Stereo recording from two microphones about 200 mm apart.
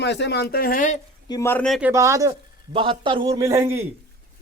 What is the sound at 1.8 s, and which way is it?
A man's voice, 10° right (ahead or behind).